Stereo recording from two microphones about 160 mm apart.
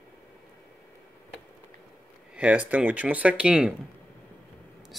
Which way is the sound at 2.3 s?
10° right (ahead or behind).